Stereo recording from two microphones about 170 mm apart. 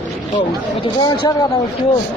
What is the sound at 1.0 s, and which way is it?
Speech, 25° left (ahead or behind).